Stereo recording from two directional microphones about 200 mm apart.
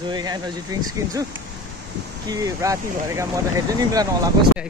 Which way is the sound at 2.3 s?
15° right (ahead or behind).